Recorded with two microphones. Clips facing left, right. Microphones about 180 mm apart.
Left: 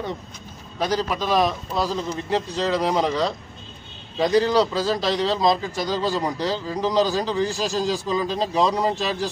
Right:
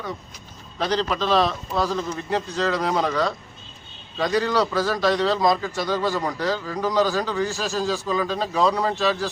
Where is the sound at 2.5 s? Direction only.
15° left (ahead or behind).